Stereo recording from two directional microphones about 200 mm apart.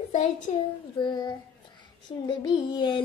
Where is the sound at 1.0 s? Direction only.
20° left (ahead or behind).